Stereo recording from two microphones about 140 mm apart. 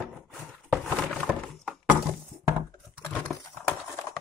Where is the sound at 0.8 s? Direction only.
5° left (ahead or behind).